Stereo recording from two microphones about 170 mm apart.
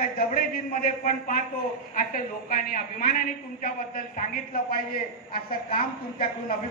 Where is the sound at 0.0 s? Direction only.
55° left (ahead or behind).